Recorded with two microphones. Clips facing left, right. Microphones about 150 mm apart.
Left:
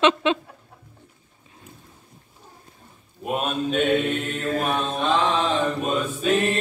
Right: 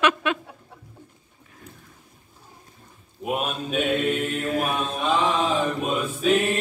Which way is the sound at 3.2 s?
5° right (ahead or behind).